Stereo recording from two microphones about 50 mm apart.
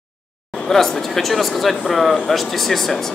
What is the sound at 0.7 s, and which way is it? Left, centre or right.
Speech, centre.